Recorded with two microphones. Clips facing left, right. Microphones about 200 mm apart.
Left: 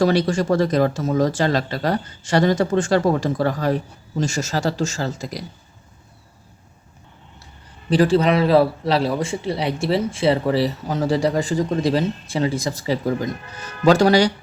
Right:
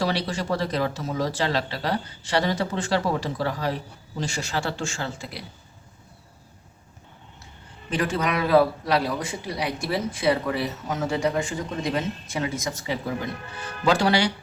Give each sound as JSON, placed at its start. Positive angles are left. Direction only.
{"t": 0.0, "sound": "a man's voice", "side_deg": 45}
{"t": 7.9, "sound": "a man's voice", "side_deg": 35}